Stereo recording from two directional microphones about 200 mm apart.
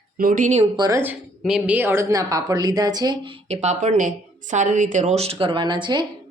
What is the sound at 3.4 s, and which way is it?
Speech, 35° right (ahead or behind).